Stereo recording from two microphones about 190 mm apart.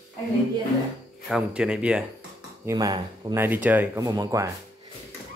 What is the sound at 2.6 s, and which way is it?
Speech, 20° right (ahead or behind).